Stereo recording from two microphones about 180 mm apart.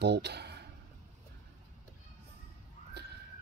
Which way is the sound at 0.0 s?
65° right (ahead or behind).